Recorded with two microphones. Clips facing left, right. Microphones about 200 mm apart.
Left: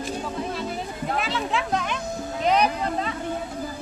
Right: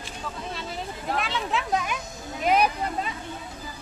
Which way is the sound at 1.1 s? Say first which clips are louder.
Left 1 dB; centre (ahead or behind).